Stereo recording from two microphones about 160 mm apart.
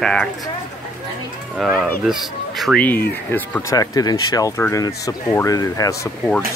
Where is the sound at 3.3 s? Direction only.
15° left (ahead or behind).